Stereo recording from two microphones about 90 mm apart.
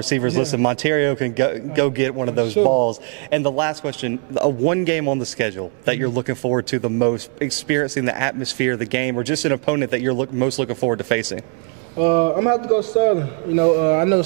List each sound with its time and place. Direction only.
0.0 s a man's voice: 15° right (ahead or behind)